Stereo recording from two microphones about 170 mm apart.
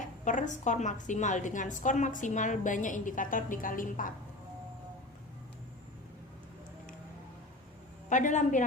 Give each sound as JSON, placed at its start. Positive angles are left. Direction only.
{"t": 0.3, "sound": "a woman's voice", "side_deg": 45}
{"t": 8.1, "sound": "a woman's voice", "side_deg": 45}